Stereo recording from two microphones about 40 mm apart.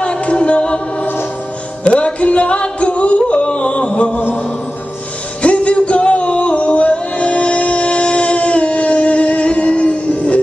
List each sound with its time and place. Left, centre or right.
0.0 s a capella: left
1.9 s yodeling: left
5.4 s music: left